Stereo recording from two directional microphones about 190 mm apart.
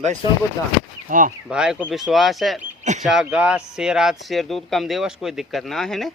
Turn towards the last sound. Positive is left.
turn(degrees=0)  # may be behind; listen again after turning